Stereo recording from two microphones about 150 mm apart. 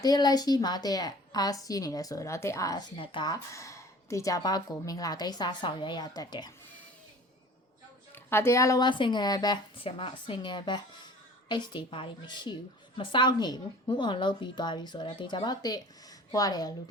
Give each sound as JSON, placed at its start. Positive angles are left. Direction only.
{"t": 0.0, "sound": "speech", "side_deg": 25}
{"t": 3.0, "sound": "speech", "side_deg": 35}
{"t": 3.5, "sound": "speech", "side_deg": 20}
{"t": 8.1, "sound": "a woman's voice", "side_deg": 15}